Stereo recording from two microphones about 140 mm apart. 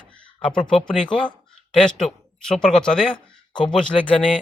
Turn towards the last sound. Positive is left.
turn(degrees=5)  # may be behind; listen again after turning